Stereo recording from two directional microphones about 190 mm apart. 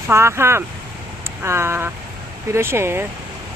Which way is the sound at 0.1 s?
15° right (ahead or behind).